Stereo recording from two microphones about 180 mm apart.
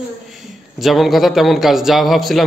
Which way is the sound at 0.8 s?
Centre (ahead or behind).